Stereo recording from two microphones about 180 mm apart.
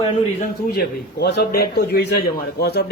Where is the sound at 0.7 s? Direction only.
65° left (ahead or behind).